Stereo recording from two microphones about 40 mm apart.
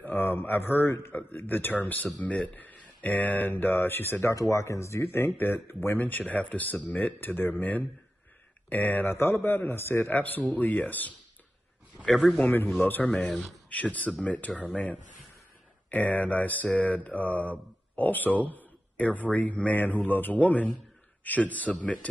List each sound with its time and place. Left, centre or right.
0.0 s speech: left
1.1 s speech: left
3.4 s a man's voice: left
5.9 s speech: left
7.2 s speech: left
9.1 s a man's voice: left
10.1 s speech: left
12.4 s speech: left
13.3 s speech: centre
13.7 s speech: left
15.9 s speech: left